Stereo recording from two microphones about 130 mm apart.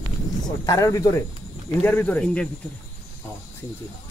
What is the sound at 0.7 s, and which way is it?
Speech, 25° left (ahead or behind).